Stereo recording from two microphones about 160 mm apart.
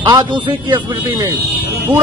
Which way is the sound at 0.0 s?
30° right (ahead or behind).